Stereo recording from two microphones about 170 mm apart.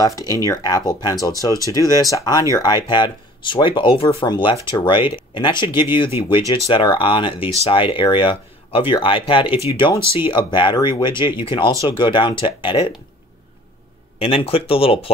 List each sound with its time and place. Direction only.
0.0 s speech: 20° left (ahead or behind)
14.1 s speech: 35° left (ahead or behind)